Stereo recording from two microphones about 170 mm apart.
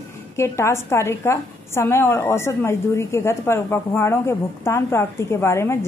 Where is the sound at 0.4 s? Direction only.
15° left (ahead or behind).